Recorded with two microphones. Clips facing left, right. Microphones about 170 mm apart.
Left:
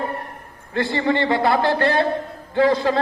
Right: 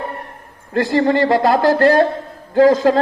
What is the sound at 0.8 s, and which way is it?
A man's voice, 40° right (ahead or behind).